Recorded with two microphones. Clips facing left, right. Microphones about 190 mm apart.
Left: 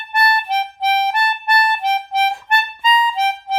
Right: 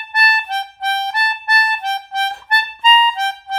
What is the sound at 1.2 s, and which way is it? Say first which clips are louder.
Harmonica: left 3 dB; 25° left (ahead or behind).